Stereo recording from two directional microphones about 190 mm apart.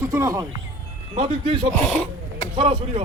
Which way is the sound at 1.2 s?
35° right (ahead or behind).